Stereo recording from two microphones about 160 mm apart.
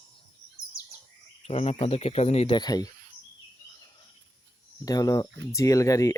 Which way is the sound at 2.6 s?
25° left (ahead or behind).